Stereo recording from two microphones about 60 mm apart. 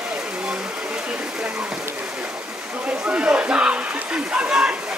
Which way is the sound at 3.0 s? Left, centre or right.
Right.